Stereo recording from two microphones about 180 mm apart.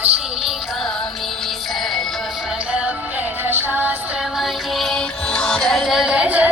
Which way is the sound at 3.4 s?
10° right (ahead or behind).